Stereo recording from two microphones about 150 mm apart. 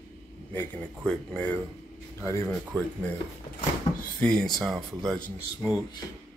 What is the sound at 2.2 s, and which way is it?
Speech, 20° left (ahead or behind).